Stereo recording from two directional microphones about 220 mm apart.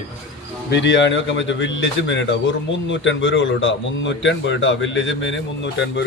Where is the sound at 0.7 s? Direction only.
55° left (ahead or behind).